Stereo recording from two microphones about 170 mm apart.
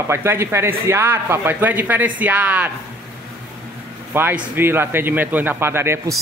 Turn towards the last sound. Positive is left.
turn(degrees=-15)  # may be behind; listen again after turning